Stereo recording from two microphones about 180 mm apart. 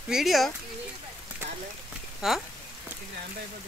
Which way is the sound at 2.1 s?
Centre (ahead or behind).